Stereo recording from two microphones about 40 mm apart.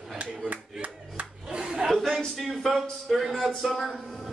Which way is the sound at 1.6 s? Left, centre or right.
Centre.